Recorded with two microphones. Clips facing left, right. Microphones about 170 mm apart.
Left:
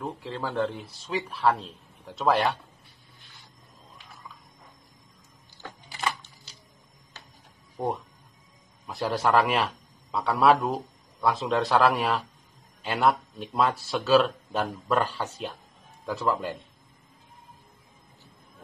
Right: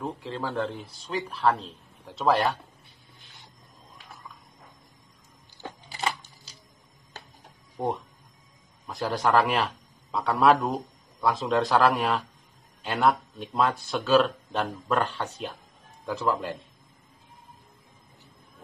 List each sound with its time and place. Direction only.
0.0 s a man's voice: centre (ahead or behind)
5.6 s a sound: 25° right (ahead or behind)
7.7 s music: centre (ahead or behind)
8.8 s a man's voice: 5° left (ahead or behind)